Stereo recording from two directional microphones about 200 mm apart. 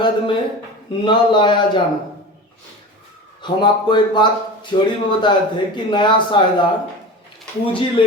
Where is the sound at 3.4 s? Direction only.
20° left (ahead or behind).